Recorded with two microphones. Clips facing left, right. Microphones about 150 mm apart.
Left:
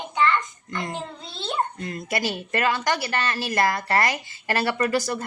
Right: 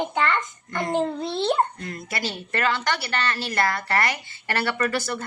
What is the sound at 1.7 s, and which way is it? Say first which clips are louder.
Speech: left 4 dB; 20° left (ahead or behind).